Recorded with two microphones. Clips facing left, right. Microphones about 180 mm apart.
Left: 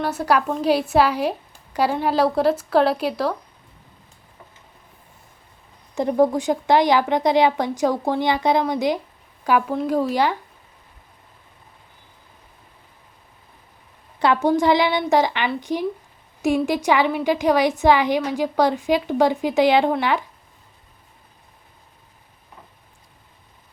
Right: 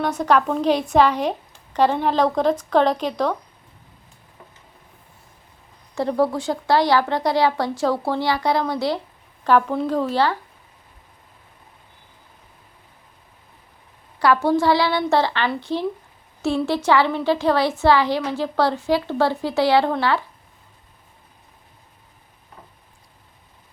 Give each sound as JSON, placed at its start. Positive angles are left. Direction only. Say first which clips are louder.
{"t": 0.0, "sound": "a woman's voice", "louder": "right 1 dB", "side_deg": 5}
{"t": 5.9, "sound": "a woman's voice", "louder": "left 2 dB", "side_deg": 15}
{"t": 14.2, "sound": "a woman's voice", "louder": "even", "side_deg": 20}